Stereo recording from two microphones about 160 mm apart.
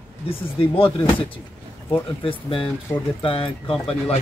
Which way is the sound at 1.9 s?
35° left (ahead or behind).